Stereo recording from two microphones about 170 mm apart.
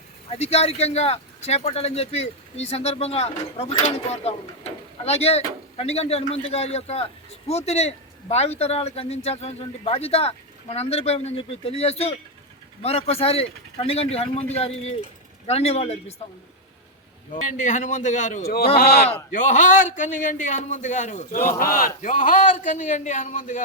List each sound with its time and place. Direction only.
0.3 s speech: 40° left (ahead or behind)
17.3 s a man's voice: 45° left (ahead or behind)
18.4 s speech: 65° left (ahead or behind)
19.3 s a man's voice: 50° left (ahead or behind)